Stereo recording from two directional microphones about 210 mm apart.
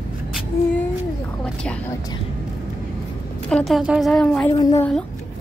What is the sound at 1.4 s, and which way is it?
Speech, 5° left (ahead or behind).